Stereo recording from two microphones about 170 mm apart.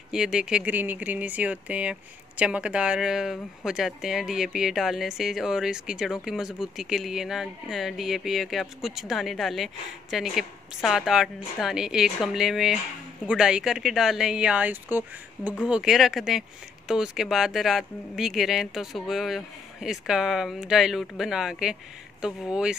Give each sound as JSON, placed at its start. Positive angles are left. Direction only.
{"t": 0.1, "sound": "speech", "side_deg": -5}